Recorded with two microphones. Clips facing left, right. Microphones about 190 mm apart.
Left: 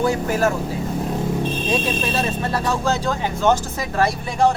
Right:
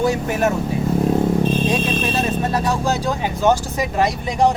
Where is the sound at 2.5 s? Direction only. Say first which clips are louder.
Right 1 dB; 15° right (ahead or behind).